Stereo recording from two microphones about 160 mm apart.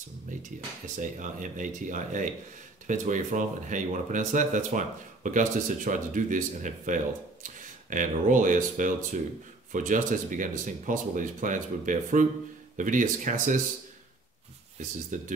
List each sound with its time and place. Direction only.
1.2 s speech: 55° right (ahead or behind)
14.8 s speech: 50° right (ahead or behind)